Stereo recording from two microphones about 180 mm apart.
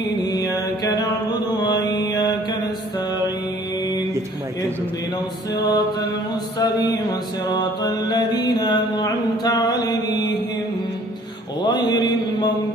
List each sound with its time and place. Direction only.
0.2 s mantra: 20° left (ahead or behind)
5.5 s music: 20° left (ahead or behind)
6.6 s mantra: 20° left (ahead or behind)
11.6 s mantra: 25° left (ahead or behind)